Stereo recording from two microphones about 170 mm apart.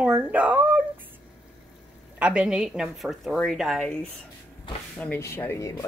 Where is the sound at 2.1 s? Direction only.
5° right (ahead or behind).